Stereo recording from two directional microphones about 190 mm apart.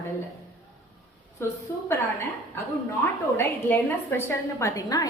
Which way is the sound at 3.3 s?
15° left (ahead or behind).